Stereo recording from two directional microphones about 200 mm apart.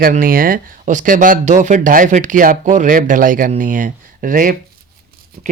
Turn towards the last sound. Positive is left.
turn(degrees=-40)  # may be behind; listen again after turning